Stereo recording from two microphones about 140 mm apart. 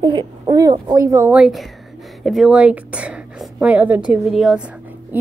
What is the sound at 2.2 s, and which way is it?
A woman's voice, centre (ahead or behind).